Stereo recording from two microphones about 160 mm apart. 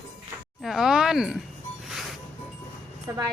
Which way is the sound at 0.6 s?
Centre (ahead or behind).